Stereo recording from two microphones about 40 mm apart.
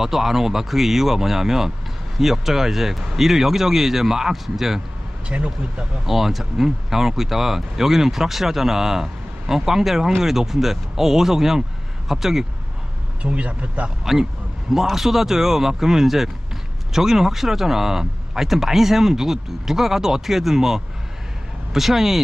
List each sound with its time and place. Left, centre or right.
0.0 s speech: centre
6.1 s speech: centre
13.2 s speech: right
14.0 s speech: centre